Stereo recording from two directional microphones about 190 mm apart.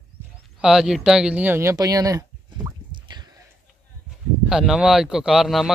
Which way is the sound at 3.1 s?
20° right (ahead or behind).